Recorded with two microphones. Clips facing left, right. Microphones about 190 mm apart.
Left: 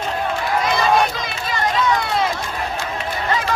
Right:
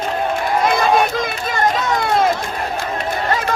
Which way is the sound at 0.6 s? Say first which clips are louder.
Right 2 dB; 50° right (ahead or behind).